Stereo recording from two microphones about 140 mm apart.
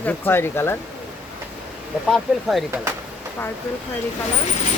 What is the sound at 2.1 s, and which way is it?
Speech, centre (ahead or behind).